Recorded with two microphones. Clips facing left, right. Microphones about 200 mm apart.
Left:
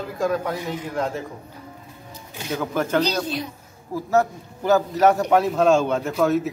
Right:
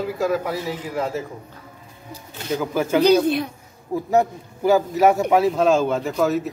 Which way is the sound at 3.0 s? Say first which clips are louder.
Right 9 dB; 55° right (ahead or behind).